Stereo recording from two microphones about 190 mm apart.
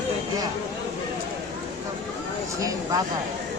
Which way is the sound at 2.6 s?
15° right (ahead or behind).